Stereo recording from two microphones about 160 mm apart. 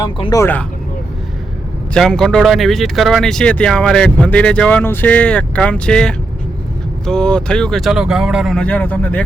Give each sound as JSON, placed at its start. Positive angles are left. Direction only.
{"t": 0.0, "sound": "speech", "side_deg": 25}
{"t": 1.9, "sound": "speech", "side_deg": 5}